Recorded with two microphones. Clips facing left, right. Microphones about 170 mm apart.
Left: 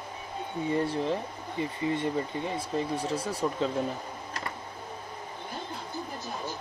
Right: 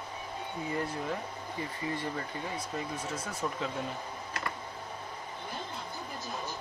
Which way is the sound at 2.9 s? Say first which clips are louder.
Left 7 dB; 35° left (ahead or behind).